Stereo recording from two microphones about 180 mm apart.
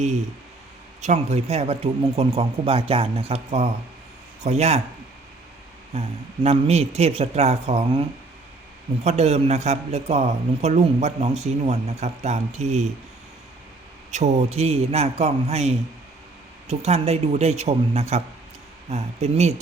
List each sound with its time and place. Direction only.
1.0 s speech: 40° right (ahead or behind)
5.9 s speech: 35° right (ahead or behind)
9.0 s speech: 35° right (ahead or behind)
14.1 s speech: 40° right (ahead or behind)